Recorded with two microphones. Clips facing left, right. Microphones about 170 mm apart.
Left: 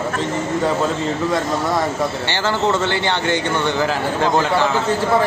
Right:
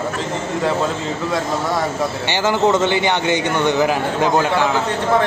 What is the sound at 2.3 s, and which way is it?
A man's voice, 15° right (ahead or behind).